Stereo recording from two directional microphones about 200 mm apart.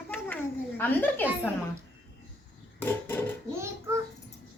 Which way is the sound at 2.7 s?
10° left (ahead or behind).